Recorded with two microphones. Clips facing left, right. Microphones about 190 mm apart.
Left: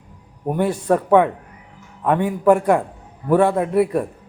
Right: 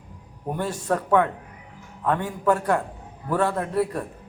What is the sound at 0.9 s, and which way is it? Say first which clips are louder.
A man's voice: left 5 dB; 10° left (ahead or behind).